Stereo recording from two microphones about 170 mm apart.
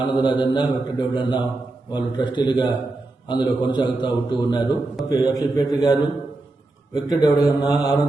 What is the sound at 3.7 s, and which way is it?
Speech, 25° left (ahead or behind).